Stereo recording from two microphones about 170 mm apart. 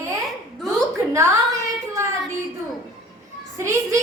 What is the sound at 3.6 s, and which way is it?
Speech, 15° right (ahead or behind).